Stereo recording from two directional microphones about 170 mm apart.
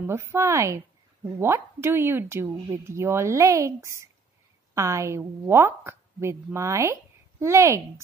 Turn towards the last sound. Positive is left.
turn(degrees=-15)  # may be behind; listen again after turning